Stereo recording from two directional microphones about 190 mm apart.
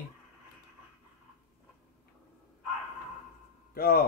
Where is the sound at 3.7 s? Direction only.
55° left (ahead or behind).